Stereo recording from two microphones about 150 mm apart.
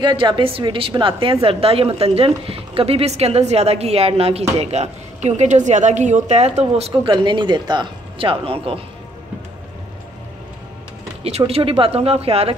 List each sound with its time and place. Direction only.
0.0 s a woman's voice: 30° right (ahead or behind)
6.9 s a woman's voice: 30° right (ahead or behind)
11.2 s a woman's voice: 40° right (ahead or behind)